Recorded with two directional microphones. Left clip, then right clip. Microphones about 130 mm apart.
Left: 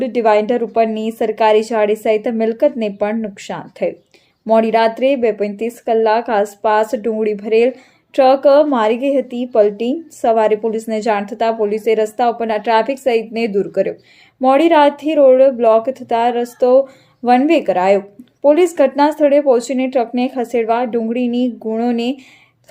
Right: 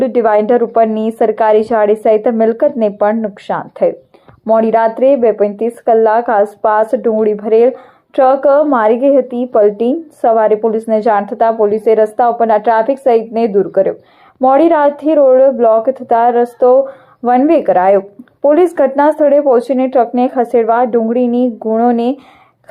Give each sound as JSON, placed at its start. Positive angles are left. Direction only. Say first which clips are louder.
{"t": 0.0, "sound": "a woman's voice", "louder": "right 3 dB", "side_deg": 20}